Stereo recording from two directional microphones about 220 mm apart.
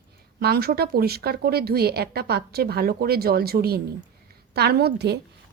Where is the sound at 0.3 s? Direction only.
45° right (ahead or behind).